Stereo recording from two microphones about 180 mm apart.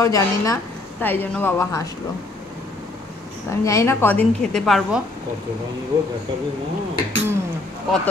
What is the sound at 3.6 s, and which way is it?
A woman's voice, 15° left (ahead or behind).